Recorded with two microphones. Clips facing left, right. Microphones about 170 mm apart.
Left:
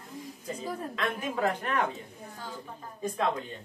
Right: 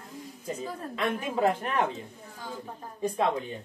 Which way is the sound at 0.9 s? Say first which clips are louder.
Right 5 dB; 20° right (ahead or behind).